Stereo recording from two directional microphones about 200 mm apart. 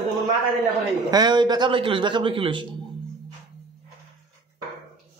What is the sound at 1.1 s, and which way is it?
A man's voice, 20° right (ahead or behind).